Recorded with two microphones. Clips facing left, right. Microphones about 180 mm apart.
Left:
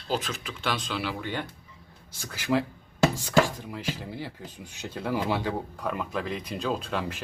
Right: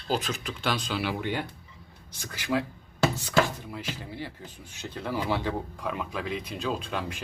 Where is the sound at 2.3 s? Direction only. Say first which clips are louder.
Left 2 dB; 10° left (ahead or behind).